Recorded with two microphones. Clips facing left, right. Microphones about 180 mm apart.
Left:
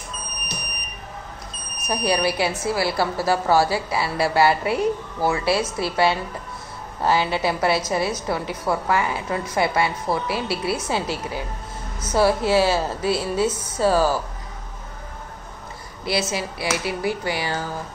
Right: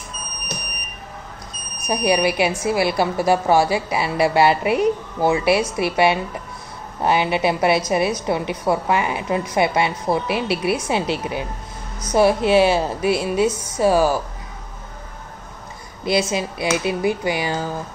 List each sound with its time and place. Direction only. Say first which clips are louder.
1.9 s a woman's voice: right 3 dB; 15° right (ahead or behind)
16.0 s a woman's voice: right 4 dB; 15° right (ahead or behind)